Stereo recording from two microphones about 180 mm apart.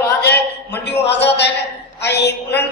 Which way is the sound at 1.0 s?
70° left (ahead or behind).